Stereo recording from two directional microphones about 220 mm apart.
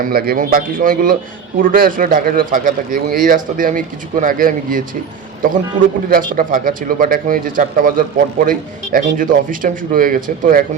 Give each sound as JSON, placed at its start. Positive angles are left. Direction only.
{"t": 0.0, "sound": "speech", "side_deg": -45}
{"t": 6.1, "sound": "speech", "side_deg": -40}